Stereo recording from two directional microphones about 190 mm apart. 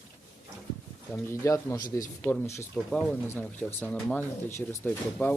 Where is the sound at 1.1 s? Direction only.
15° left (ahead or behind).